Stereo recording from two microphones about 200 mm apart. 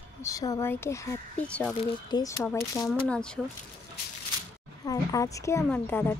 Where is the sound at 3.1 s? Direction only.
5° left (ahead or behind).